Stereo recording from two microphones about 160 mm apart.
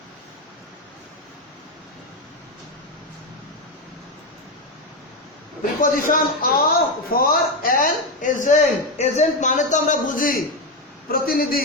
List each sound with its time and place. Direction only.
6.1 s a man's voice: 65° left (ahead or behind)